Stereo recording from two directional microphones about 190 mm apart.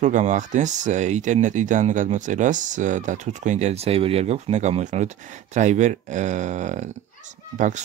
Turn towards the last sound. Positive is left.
turn(degrees=-40)  # may be behind; listen again after turning